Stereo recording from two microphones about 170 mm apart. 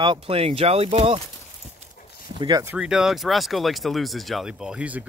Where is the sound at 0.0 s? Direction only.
30° right (ahead or behind).